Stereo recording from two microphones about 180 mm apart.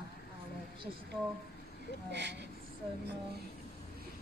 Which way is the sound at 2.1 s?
75° right (ahead or behind).